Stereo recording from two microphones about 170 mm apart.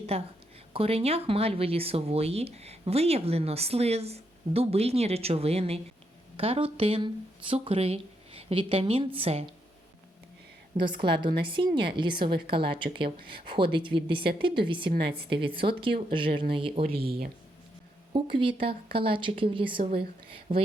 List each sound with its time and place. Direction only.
0.1 s speech: 35° right (ahead or behind)
10.8 s a woman's voice: 30° right (ahead or behind)
18.1 s speech: 30° right (ahead or behind)